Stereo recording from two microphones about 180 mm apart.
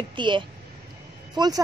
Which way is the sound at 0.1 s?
25° right (ahead or behind).